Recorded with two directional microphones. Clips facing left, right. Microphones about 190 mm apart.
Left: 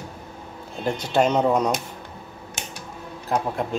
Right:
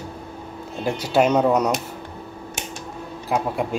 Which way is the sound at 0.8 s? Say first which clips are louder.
Right 2 dB; 10° right (ahead or behind).